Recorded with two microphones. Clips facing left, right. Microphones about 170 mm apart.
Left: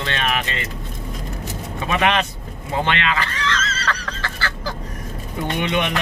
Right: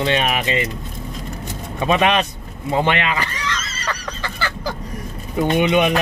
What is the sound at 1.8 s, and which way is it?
Speech, 20° right (ahead or behind).